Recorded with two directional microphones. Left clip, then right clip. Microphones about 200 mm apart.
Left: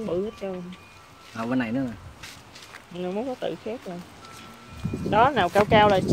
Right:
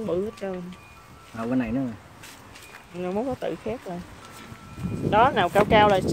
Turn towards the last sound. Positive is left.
turn(degrees=-5)  # may be behind; listen again after turning